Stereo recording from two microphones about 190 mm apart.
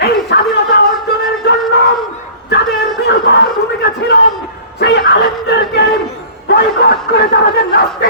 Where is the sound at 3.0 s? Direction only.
60° left (ahead or behind).